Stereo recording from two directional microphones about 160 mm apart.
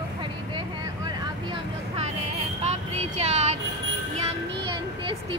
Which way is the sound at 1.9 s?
45° right (ahead or behind).